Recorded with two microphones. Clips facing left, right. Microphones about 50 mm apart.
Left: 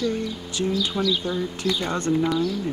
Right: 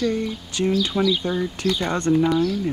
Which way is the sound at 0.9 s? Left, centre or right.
Centre.